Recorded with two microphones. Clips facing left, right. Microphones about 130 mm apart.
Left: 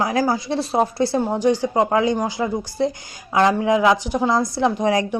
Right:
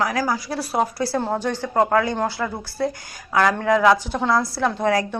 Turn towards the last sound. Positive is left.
turn(degrees=20)  # may be behind; listen again after turning